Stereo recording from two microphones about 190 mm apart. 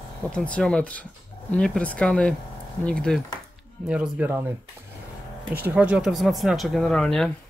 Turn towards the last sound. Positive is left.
turn(degrees=5)  # may be behind; listen again after turning